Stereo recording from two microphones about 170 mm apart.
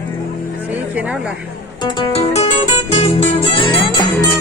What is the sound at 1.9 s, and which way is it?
Music, 35° left (ahead or behind).